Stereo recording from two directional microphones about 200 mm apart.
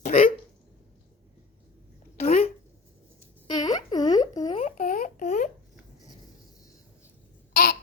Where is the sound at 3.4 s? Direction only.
20° left (ahead or behind).